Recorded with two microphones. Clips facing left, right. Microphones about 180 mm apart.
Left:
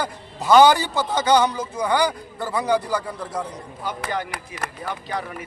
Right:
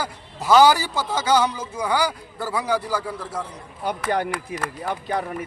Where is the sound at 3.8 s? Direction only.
60° right (ahead or behind).